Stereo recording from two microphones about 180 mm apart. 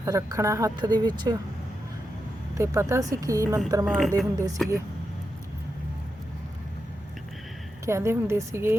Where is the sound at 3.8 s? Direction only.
Centre (ahead or behind).